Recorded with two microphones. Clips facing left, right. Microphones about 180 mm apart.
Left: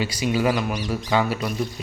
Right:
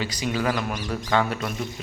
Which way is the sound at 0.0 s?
10° left (ahead or behind).